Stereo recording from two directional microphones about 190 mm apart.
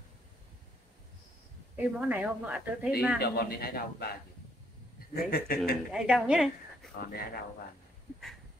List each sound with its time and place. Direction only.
1.8 s a woman's voice: 10° right (ahead or behind)
3.2 s a man's voice: 55° left (ahead or behind)
5.9 s a woman's voice: 5° right (ahead or behind)
7.0 s a man's voice: 50° left (ahead or behind)